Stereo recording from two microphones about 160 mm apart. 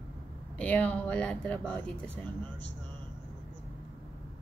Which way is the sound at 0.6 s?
10° left (ahead or behind).